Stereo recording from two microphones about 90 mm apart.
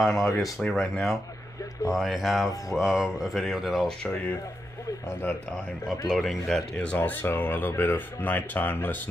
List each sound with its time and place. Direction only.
0.0 s speech: centre (ahead or behind)
5.9 s speech: centre (ahead or behind); by 8.9 s 20° left (ahead or behind)